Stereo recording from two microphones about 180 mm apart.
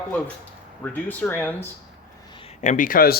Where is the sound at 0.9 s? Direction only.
10° left (ahead or behind).